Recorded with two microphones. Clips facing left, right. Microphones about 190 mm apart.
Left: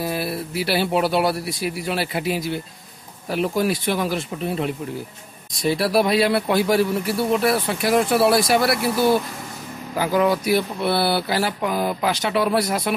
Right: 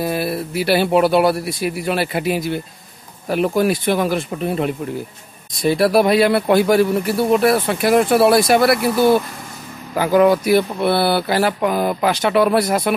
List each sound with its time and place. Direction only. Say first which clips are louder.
0.0 s speech: right 4 dB; 55° right (ahead or behind)
9.9 s speech: right 6 dB; 60° right (ahead or behind)